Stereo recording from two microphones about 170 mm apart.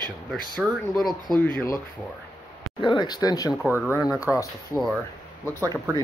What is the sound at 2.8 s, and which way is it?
Speech, 25° left (ahead or behind).